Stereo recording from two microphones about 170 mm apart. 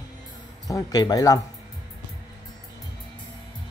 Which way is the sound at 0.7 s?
20° left (ahead or behind).